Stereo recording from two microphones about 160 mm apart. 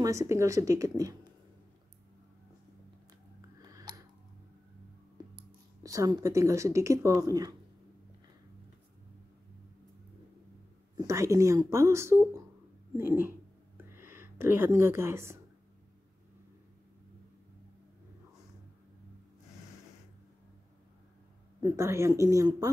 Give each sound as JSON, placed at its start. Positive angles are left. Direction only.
{"t": 0.0, "sound": "speech", "side_deg": -20}
{"t": 3.6, "sound": "tick-tock", "side_deg": -20}
{"t": 5.1, "sound": "speech", "side_deg": -25}
{"t": 11.0, "sound": "speech", "side_deg": -20}
{"t": 21.5, "sound": "speech", "side_deg": -20}